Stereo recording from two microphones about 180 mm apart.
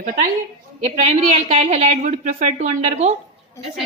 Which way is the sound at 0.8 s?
35° right (ahead or behind).